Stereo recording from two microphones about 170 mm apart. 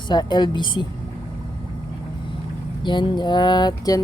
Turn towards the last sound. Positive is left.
turn(degrees=25)  # may be behind; listen again after turning